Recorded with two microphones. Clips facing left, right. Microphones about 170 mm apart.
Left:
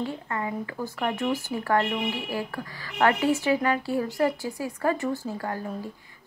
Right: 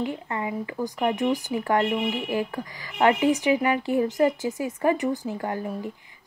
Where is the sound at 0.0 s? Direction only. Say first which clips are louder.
Right 2 dB; 15° right (ahead or behind).